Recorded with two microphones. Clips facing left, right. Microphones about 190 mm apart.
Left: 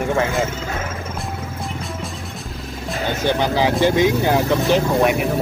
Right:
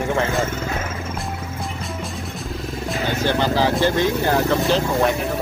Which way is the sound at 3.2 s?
15° left (ahead or behind).